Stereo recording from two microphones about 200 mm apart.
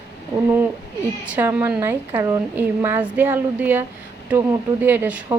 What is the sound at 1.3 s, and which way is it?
Speech, 10° right (ahead or behind).